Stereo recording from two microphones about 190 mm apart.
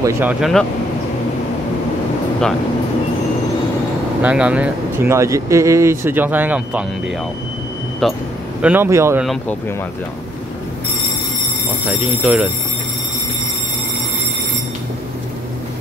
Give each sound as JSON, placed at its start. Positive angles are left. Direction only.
{"t": 0.0, "sound": "speech", "side_deg": -10}
{"t": 4.2, "sound": "speech", "side_deg": -5}
{"t": 8.0, "sound": "speech", "side_deg": 0}
{"t": 9.2, "sound": "speech", "side_deg": 0}
{"t": 11.9, "sound": "speech", "side_deg": -5}